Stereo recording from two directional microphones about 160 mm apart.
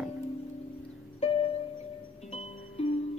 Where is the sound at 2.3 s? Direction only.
40° left (ahead or behind).